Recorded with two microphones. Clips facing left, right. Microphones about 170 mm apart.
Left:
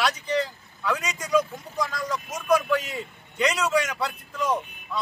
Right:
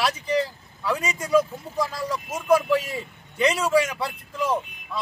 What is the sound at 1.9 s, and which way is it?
Speech, 30° right (ahead or behind).